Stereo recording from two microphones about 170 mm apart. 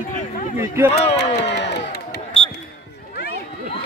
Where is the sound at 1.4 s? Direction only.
90° left.